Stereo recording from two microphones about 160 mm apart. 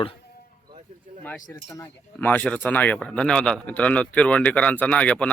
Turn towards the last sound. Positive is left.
turn(degrees=5)  # may be behind; listen again after turning